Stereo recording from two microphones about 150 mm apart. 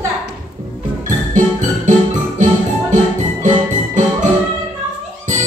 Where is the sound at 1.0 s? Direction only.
55° right (ahead or behind).